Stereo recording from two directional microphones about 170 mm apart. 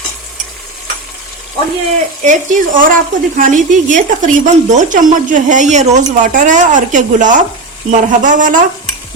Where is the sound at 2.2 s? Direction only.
50° right (ahead or behind).